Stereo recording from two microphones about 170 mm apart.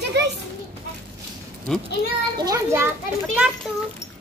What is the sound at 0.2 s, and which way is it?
Children playing, 80° right.